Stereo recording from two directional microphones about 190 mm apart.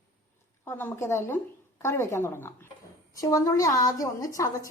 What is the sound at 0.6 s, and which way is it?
A woman's voice, 10° left (ahead or behind).